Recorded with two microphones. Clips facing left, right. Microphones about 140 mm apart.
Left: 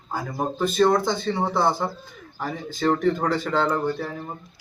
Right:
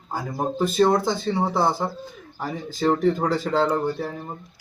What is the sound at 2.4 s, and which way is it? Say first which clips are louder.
Speech: right 1 dB; 20° right (ahead or behind).